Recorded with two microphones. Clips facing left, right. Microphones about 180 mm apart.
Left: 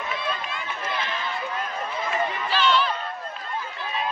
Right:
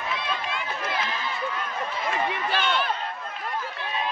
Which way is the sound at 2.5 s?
55° right (ahead or behind).